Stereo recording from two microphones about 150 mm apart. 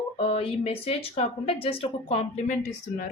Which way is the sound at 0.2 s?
40° left (ahead or behind).